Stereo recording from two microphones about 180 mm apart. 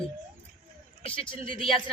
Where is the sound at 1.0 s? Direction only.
30° left (ahead or behind).